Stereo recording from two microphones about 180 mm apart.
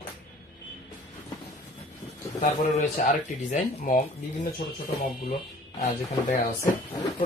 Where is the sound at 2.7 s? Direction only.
40° left (ahead or behind).